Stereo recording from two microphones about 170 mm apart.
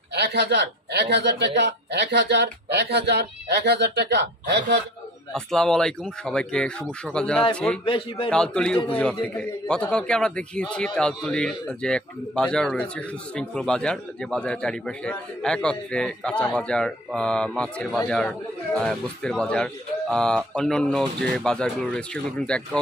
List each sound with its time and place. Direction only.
0.1 s a man's voice: 80° right
5.3 s a man's voice: 5° left (ahead or behind)